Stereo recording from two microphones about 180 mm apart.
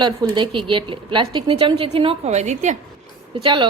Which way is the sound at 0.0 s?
25° right (ahead or behind).